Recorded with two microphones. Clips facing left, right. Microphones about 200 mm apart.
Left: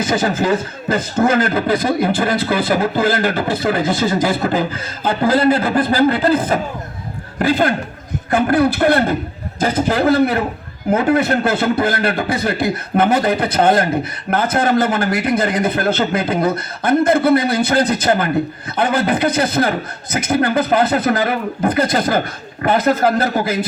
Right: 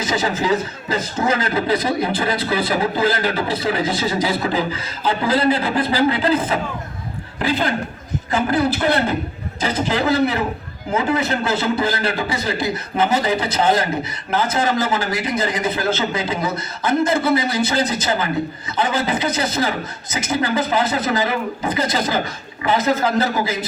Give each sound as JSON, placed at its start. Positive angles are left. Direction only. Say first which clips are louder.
{"t": 0.0, "sound": "a man's voice", "louder": "left 4 dB", "side_deg": 50}